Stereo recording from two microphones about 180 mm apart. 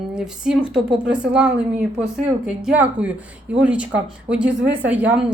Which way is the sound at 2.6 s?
10° right (ahead or behind).